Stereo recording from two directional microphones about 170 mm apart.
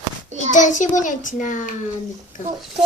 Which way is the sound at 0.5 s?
45° left (ahead or behind).